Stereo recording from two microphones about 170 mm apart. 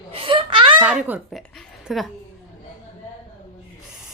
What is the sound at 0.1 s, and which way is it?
Laughter, 30° right (ahead or behind).